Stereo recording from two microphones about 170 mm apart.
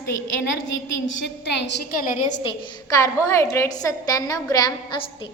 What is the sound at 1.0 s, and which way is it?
Speech, 90° left.